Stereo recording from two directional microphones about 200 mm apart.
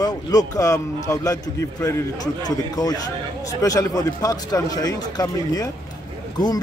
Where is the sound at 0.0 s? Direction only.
20° left (ahead or behind).